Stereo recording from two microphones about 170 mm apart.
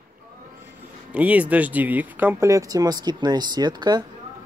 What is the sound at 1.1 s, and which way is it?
Speech, 10° right (ahead or behind).